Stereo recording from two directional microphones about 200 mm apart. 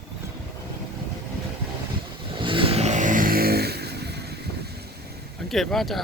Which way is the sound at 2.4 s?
25° right (ahead or behind).